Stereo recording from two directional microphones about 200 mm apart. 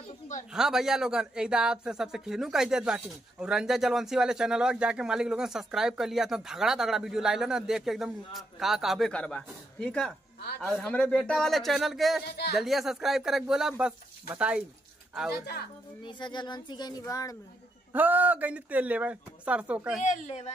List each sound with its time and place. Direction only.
0.5 s speech: centre (ahead or behind)
16.0 s speech: 25° left (ahead or behind)
17.9 s speech: 10° right (ahead or behind)
20.0 s a woman's voice: 35° left (ahead or behind)